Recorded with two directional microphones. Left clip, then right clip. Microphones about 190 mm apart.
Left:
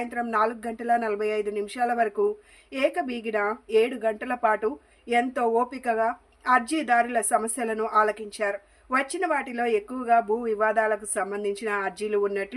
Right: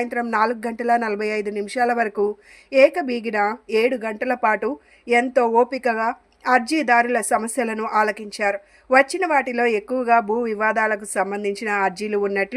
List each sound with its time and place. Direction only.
0.0 s a woman's voice: 40° right (ahead or behind)